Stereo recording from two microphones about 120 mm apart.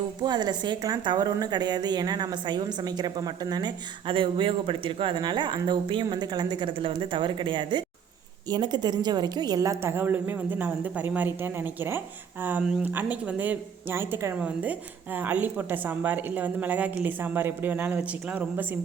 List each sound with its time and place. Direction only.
0.2 s a woman's voice: 35° right (ahead or behind); by 18.8 s 15° right (ahead or behind)